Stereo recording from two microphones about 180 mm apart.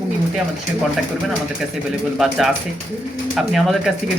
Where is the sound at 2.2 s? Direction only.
Centre (ahead or behind).